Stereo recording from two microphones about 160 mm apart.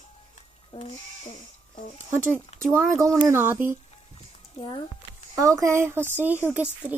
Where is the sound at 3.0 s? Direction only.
20° right (ahead or behind).